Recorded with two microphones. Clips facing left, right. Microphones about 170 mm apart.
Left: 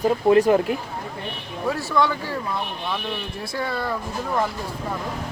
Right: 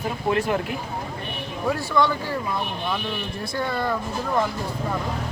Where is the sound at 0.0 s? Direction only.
40° left (ahead or behind).